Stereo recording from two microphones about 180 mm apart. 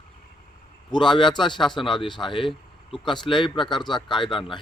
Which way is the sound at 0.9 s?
25° left (ahead or behind).